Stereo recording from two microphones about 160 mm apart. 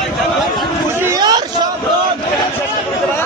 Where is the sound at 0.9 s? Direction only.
20° right (ahead or behind).